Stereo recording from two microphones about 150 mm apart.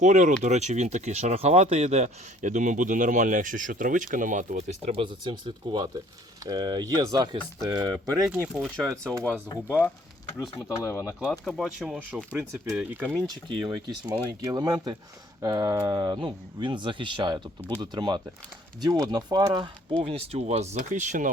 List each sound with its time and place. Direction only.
0.0 s speech: 55° right (ahead or behind)
4.9 s speech: 35° right (ahead or behind)
8.3 s speech: 5° right (ahead or behind)
9.6 s speech: 15° left (ahead or behind)
11.0 s speech: centre (ahead or behind)
13.2 s speech: 30° right (ahead or behind)
20.0 s speech: 40° right (ahead or behind); by 21.3 s 55° right (ahead or behind)